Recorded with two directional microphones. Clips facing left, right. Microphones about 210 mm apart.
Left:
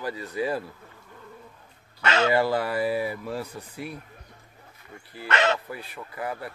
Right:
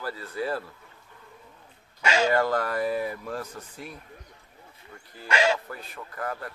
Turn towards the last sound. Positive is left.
turn(degrees=10)  # may be behind; listen again after turning